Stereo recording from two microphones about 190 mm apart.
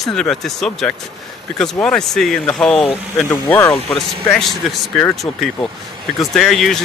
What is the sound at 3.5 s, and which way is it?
Speech, 10° left (ahead or behind).